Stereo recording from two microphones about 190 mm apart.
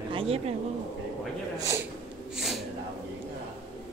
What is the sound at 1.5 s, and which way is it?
Speech, 15° right (ahead or behind).